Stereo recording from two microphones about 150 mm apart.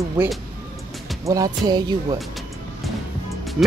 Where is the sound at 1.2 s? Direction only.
25° right (ahead or behind).